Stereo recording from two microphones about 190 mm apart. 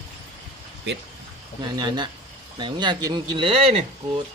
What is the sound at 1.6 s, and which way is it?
Speech, 25° right (ahead or behind).